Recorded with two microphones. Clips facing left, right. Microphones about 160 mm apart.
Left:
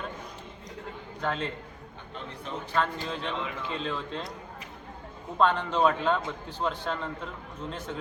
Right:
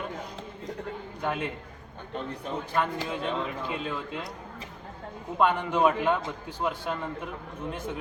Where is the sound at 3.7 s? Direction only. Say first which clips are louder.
Even; 10° right (ahead or behind).